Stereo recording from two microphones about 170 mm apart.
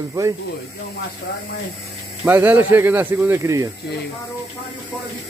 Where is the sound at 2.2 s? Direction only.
10° right (ahead or behind).